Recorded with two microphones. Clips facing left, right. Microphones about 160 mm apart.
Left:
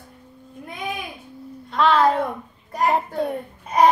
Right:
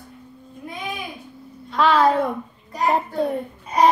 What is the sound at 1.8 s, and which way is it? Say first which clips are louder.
Speech: even; centre (ahead or behind).